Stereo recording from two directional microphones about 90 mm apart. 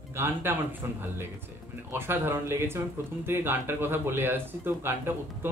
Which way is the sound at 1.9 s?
25° right (ahead or behind).